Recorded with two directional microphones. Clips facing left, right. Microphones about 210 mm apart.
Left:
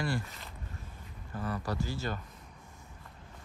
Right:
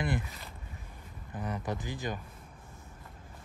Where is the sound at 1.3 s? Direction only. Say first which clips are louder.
Even; 20° right (ahead or behind).